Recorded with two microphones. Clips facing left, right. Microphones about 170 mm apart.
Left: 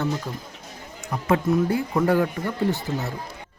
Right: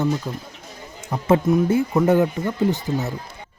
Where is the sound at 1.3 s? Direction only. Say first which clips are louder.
Right 4 dB; 20° right (ahead or behind).